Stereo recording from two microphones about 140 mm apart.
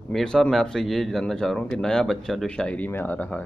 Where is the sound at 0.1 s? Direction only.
5° left (ahead or behind).